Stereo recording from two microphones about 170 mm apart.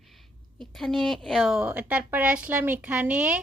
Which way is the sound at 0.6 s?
Centre (ahead or behind).